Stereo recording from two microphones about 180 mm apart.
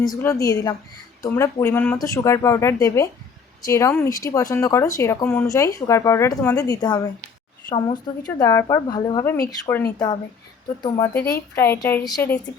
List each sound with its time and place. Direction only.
0.0 s a woman's voice: 15° left (ahead or behind)
10.8 s a woman's voice: 20° left (ahead or behind)